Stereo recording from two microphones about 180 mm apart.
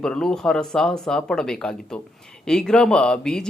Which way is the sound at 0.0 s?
5° left (ahead or behind).